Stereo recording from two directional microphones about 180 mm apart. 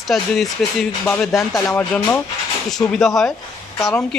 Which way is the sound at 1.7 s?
10° left (ahead or behind).